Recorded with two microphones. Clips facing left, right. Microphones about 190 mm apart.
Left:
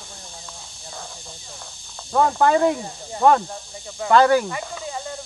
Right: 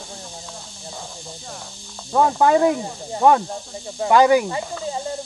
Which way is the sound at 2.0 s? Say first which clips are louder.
Right 1 dB; 10° right (ahead or behind).